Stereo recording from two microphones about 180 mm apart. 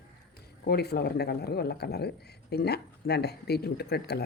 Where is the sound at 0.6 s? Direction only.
65° left (ahead or behind).